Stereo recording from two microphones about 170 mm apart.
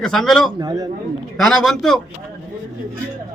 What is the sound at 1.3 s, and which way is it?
Speech, 5° left (ahead or behind).